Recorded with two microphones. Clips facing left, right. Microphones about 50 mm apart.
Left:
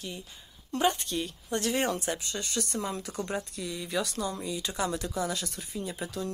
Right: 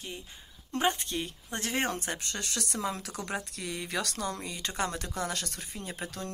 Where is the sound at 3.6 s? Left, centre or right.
Right.